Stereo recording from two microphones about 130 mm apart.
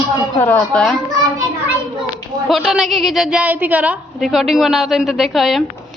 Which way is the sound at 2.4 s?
Centre (ahead or behind).